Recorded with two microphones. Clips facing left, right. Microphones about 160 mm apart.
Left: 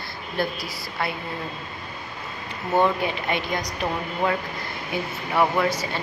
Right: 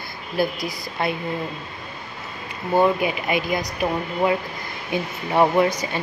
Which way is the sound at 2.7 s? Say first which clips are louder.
Right 3 dB; 10° right (ahead or behind).